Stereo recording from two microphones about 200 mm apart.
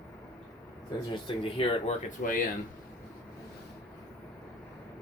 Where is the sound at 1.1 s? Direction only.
25° left (ahead or behind).